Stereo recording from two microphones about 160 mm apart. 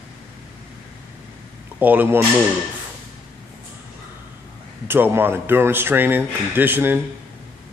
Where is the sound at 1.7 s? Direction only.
10° right (ahead or behind).